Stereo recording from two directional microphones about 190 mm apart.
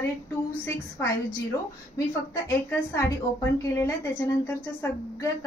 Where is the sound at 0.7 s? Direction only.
15° left (ahead or behind).